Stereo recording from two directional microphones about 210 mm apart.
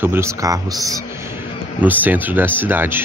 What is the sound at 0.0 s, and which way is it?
Speech, 10° right (ahead or behind).